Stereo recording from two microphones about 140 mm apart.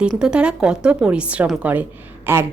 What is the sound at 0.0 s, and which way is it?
Speech, 5° right (ahead or behind).